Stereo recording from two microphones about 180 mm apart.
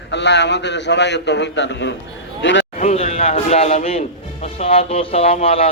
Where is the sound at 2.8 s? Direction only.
35° left (ahead or behind).